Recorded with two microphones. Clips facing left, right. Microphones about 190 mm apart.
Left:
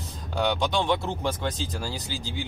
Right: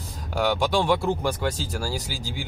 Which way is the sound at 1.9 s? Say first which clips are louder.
Right 2 dB; 10° right (ahead or behind).